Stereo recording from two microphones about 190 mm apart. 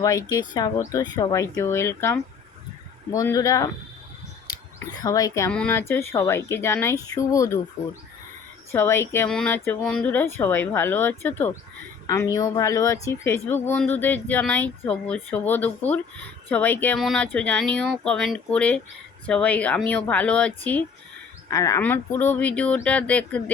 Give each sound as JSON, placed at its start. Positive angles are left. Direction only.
{"t": 0.0, "sound": "speech", "side_deg": 15}
{"t": 5.0, "sound": "speech", "side_deg": 20}
{"t": 8.7, "sound": "speech", "side_deg": 15}